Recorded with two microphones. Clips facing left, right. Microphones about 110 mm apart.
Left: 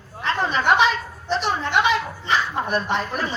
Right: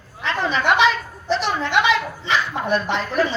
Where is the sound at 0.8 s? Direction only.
90° right.